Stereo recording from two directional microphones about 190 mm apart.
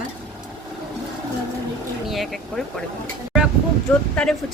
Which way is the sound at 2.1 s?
Centre (ahead or behind).